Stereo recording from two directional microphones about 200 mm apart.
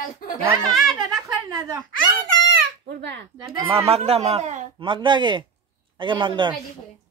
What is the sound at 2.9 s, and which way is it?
Speech, 60° right (ahead or behind).